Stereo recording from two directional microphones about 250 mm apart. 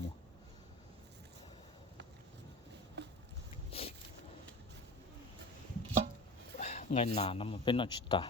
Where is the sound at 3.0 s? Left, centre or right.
Right.